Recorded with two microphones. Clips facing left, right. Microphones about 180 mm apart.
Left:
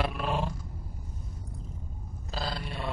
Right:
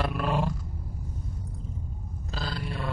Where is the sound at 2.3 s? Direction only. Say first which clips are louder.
Left 1 dB; 35° left (ahead or behind).